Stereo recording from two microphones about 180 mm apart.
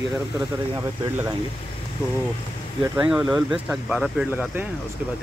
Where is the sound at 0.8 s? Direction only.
15° right (ahead or behind).